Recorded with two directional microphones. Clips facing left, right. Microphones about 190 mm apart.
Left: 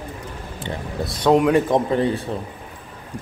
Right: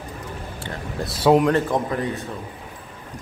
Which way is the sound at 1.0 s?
5° right (ahead or behind).